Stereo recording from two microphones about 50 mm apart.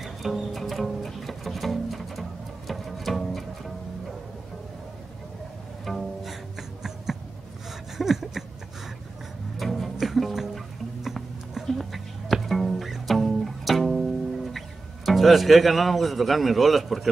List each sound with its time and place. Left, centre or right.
0.0 s music: centre
5.9 s pizzicato: centre
8.0 s a sound: centre
9.6 s music: centre
15.0 s speech: centre